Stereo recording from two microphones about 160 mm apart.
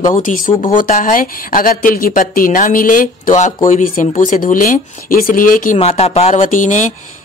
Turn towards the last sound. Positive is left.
turn(degrees=50)  # may be behind; listen again after turning